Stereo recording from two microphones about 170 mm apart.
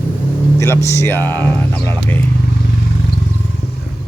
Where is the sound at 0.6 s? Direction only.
15° left (ahead or behind).